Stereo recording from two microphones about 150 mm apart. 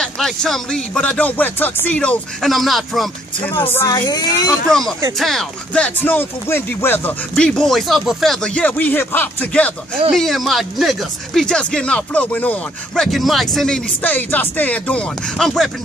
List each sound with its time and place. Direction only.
0.0 s speech: 5° left (ahead or behind)
3.7 s speech: 25° left (ahead or behind)
4.6 s speech: centre (ahead or behind)